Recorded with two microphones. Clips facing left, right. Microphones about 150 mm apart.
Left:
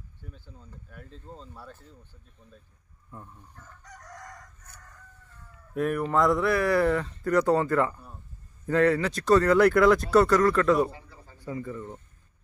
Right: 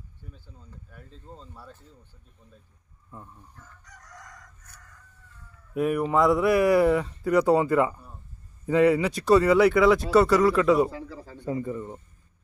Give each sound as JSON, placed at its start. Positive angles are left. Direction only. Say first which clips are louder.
{"t": 0.8, "sound": "speech", "louder": "left 2 dB", "side_deg": 0}
{"t": 3.1, "sound": "speech", "louder": "even", "side_deg": -5}
{"t": 5.8, "sound": "speech", "louder": "right 2 dB", "side_deg": -5}
{"t": 10.9, "sound": "a man's voice", "louder": "right 9 dB", "side_deg": -90}
{"t": 11.3, "sound": "speech", "louder": "right 5 dB", "side_deg": -25}